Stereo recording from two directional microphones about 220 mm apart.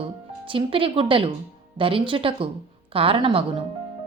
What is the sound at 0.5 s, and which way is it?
Speech, 25° right (ahead or behind).